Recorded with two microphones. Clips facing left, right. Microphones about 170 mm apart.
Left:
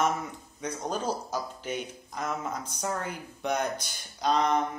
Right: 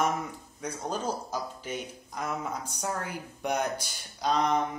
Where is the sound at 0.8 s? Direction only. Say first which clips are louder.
Left 1 dB; 10° left (ahead or behind).